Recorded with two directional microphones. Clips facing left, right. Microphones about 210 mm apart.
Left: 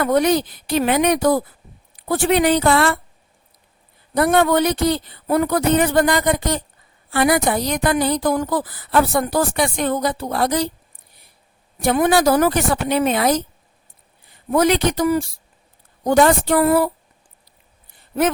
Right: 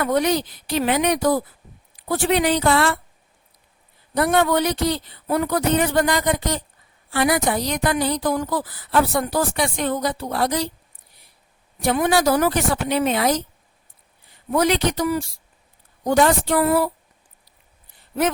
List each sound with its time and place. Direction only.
0.0 s a woman's voice: 50° left (ahead or behind)
4.1 s a woman's voice: 50° left (ahead or behind)
11.8 s a woman's voice: 50° left (ahead or behind)
14.5 s a woman's voice: 50° left (ahead or behind)